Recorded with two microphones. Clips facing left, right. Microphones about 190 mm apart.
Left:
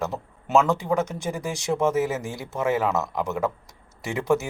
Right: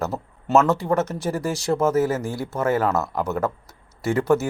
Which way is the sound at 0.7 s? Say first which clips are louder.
Right 2 dB; 15° left (ahead or behind).